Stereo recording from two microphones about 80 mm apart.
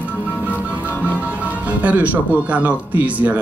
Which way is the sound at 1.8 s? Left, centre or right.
Centre.